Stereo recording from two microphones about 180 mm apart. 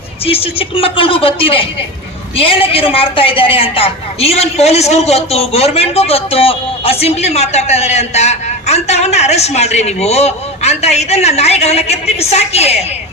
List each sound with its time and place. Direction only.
0.3 s a woman's voice: 30° left (ahead or behind)